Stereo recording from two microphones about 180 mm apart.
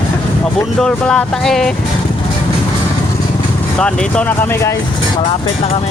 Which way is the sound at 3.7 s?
5° left (ahead or behind).